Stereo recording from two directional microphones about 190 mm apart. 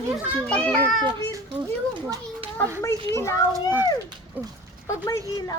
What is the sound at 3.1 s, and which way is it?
Speech, 15° left (ahead or behind).